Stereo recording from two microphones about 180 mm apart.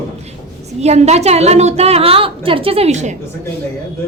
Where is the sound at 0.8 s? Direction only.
35° right (ahead or behind).